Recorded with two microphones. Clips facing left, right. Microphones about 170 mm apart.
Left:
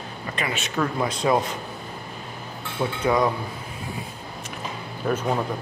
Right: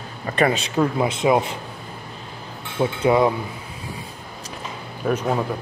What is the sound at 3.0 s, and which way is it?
Speech, 25° right (ahead or behind).